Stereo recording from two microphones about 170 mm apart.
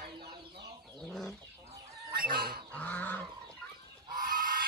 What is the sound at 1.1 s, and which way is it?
Fowl, centre (ahead or behind).